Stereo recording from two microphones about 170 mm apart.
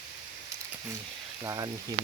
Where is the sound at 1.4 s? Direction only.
20° right (ahead or behind).